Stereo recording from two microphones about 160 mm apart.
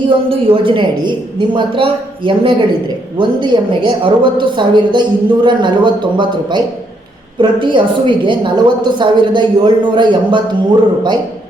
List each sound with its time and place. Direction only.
0.3 s a woman's voice: 35° right (ahead or behind)